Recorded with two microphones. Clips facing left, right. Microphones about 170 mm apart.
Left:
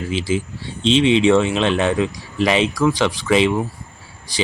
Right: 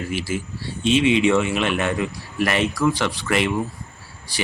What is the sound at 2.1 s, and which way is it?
A man's voice, 15° left (ahead or behind).